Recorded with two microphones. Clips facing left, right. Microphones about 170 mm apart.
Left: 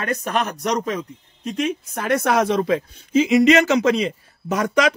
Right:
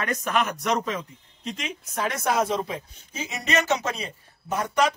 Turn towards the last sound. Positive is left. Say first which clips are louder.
# left 5 dB
turn(degrees=90)